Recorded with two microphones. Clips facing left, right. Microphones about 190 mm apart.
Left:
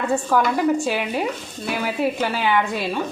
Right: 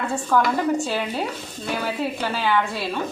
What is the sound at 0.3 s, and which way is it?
A woman's voice, 10° left (ahead or behind).